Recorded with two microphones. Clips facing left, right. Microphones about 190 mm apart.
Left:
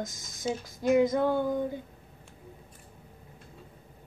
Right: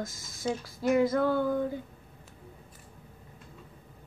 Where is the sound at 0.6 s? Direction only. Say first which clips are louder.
Left 2 dB; 20° left (ahead or behind).